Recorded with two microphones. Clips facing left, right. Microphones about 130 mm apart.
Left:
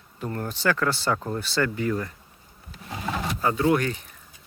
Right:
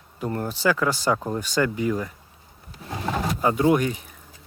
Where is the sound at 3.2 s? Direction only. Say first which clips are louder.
Right 2 dB; 20° right (ahead or behind).